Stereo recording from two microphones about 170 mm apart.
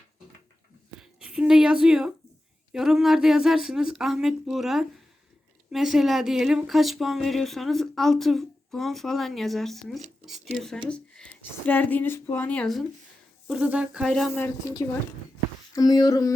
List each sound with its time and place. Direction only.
0.9 s speech: 5° right (ahead or behind)
13.5 s speech: 5° right (ahead or behind)
14.0 s speech: 5° left (ahead or behind)
15.7 s a sound: 20° left (ahead or behind)